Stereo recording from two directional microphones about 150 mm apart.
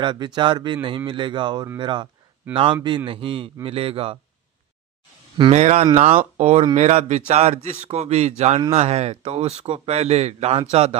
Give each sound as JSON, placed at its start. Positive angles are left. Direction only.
{"t": 0.0, "sound": "speech", "side_deg": -30}
{"t": 5.4, "sound": "speech", "side_deg": -45}